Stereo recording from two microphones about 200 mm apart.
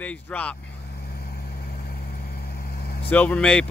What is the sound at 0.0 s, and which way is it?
Speech, 5° left (ahead or behind).